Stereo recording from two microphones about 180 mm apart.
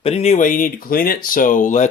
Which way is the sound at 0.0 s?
35° left (ahead or behind).